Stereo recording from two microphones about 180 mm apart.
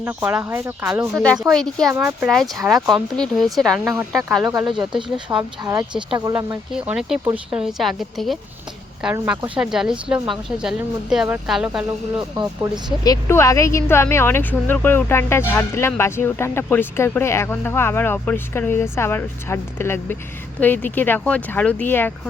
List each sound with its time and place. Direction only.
0.0 s speech: 10° right (ahead or behind)
1.1 s a woman's voice: 5° left (ahead or behind)
1.9 s speech: 10° right (ahead or behind)
2.6 s a woman's voice: centre (ahead or behind)
4.4 s speech: 20° right (ahead or behind)
6.7 s a woman's voice: 5° right (ahead or behind)
13.1 s speech: 15° left (ahead or behind)